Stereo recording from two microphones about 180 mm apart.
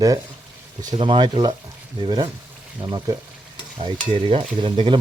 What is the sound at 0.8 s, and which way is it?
Stir, 25° right (ahead or behind).